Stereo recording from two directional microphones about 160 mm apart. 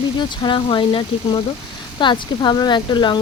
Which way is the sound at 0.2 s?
30° left (ahead or behind).